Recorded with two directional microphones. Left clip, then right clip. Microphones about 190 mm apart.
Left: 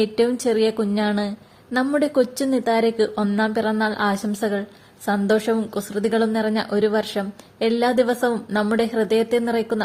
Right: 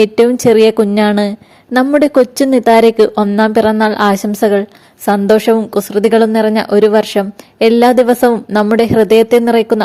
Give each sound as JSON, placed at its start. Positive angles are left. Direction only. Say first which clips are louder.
{"t": 0.0, "sound": "a woman's voice", "louder": "right 11 dB", "side_deg": -40}